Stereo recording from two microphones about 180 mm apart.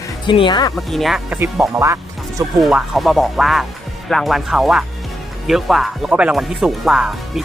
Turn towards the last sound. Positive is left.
turn(degrees=0)  # may be behind; listen again after turning